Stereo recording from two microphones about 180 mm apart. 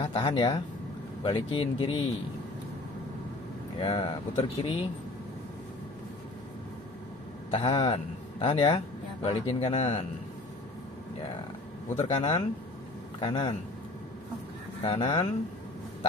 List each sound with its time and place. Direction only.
0.0 s speech: 30° left (ahead or behind)
3.8 s speech: 30° left (ahead or behind)
7.5 s a man's voice: 30° left (ahead or behind)
12.0 s speech: 35° left (ahead or behind)
14.8 s speech: 30° left (ahead or behind)